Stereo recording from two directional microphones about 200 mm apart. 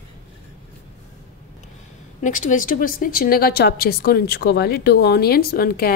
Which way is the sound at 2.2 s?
40° left (ahead or behind).